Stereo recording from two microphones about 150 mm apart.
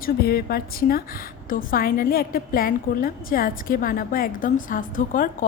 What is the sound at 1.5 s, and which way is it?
A woman's voice, 70° left (ahead or behind).